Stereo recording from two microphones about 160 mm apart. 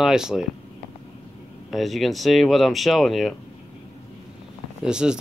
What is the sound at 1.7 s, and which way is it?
Speech, centre (ahead or behind).